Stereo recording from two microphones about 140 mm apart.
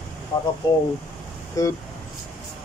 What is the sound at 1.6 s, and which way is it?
Speech, 25° left (ahead or behind).